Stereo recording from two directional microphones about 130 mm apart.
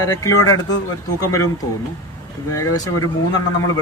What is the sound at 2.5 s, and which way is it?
Speech, 25° left (ahead or behind).